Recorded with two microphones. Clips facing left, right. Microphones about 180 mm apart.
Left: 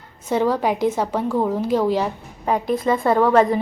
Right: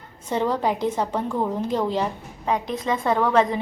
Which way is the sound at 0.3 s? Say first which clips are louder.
Left 3 dB; 10° left (ahead or behind).